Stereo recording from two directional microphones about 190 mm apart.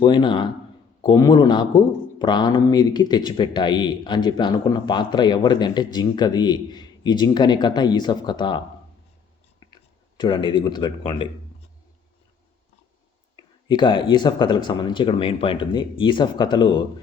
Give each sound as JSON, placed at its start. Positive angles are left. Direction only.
{"t": 0.0, "sound": "speech", "side_deg": 25}
{"t": 10.2, "sound": "speech", "side_deg": 25}
{"t": 13.3, "sound": "speech", "side_deg": 25}